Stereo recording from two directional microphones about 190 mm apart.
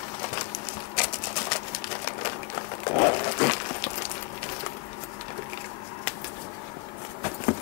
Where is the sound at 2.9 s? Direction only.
25° left (ahead or behind).